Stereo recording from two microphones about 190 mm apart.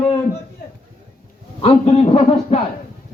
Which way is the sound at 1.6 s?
30° left (ahead or behind).